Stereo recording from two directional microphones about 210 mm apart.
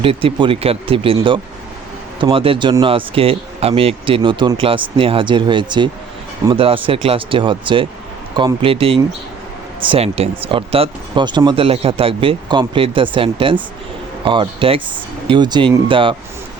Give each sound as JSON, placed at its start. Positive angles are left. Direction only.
{"t": 0.0, "sound": "speech", "side_deg": -25}